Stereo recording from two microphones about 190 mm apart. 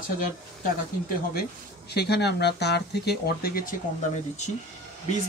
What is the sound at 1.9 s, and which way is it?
Speech, 60° left (ahead or behind).